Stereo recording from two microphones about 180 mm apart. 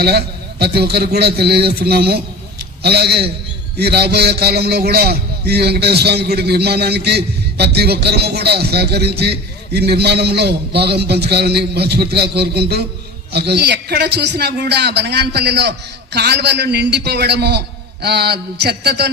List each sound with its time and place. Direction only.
0.0 s a man's voice: 65° right (ahead or behind)